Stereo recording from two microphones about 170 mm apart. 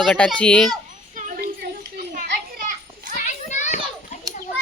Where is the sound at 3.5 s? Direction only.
45° left (ahead or behind).